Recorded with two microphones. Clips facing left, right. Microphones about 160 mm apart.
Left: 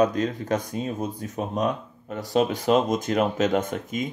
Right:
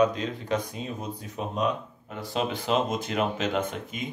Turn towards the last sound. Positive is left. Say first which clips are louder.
# left 4 dB
turn(degrees=45)  # may be behind; listen again after turning